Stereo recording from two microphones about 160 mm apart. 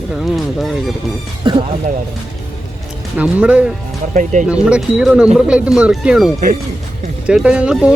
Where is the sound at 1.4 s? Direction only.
30° right (ahead or behind).